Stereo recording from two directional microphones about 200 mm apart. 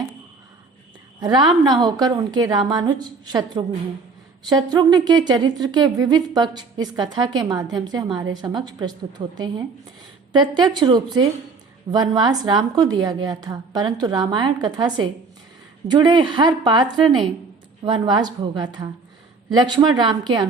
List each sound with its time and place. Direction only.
1.2 s speech: 20° right (ahead or behind)